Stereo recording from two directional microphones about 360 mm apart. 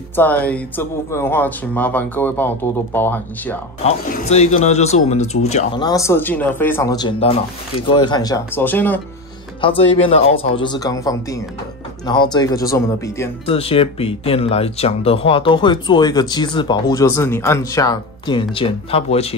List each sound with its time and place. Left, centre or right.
0.1 s speech: centre
3.8 s speech: left